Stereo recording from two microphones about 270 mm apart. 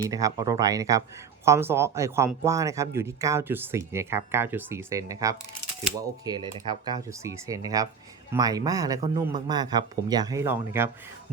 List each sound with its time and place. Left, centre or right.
0.1 s a man's voice: centre